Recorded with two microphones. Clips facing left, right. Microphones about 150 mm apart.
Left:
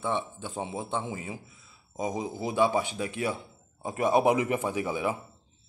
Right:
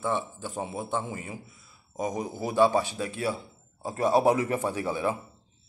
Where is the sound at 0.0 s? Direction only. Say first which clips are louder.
Right 1 dB; 20° left (ahead or behind).